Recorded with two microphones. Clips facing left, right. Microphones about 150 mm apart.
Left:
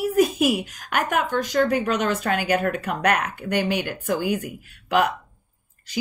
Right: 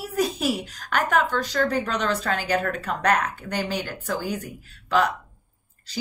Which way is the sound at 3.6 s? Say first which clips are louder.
Left 2 dB; 55° left (ahead or behind).